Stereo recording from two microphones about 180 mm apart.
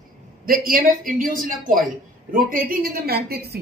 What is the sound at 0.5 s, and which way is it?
A woman's voice, 50° right (ahead or behind).